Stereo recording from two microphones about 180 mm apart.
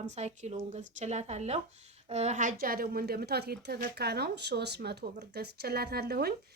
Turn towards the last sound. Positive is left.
turn(degrees=-60)  # may be behind; listen again after turning